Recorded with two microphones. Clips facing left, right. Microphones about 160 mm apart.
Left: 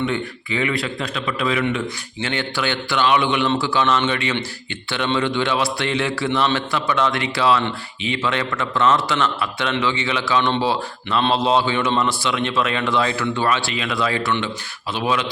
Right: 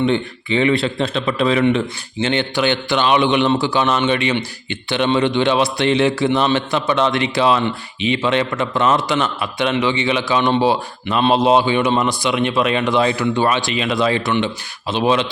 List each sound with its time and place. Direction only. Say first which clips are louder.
0.0 s speech: right 5 dB; 25° right (ahead or behind)